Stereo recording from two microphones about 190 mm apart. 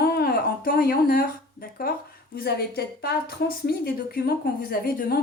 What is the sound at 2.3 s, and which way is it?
A woman's voice, 55° left (ahead or behind).